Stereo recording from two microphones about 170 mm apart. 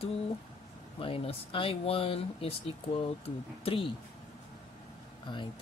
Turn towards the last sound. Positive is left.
turn(degrees=30)  # may be behind; listen again after turning